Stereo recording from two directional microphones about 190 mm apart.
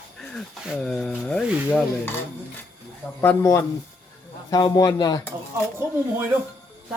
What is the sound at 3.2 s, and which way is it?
A man's voice, 10° left (ahead or behind).